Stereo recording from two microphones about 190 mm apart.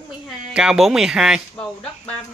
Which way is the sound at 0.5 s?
5° right (ahead or behind).